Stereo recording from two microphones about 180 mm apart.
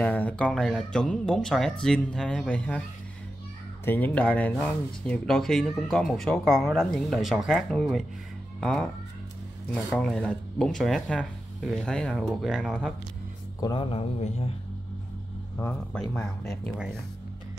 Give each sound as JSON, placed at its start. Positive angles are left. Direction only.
{"t": 0.0, "sound": "speech", "side_deg": 10}
{"t": 3.8, "sound": "speech", "side_deg": 10}
{"t": 9.9, "sound": "speech", "side_deg": 5}
{"t": 13.6, "sound": "a man's voice", "side_deg": 25}
{"t": 15.5, "sound": "speech", "side_deg": 10}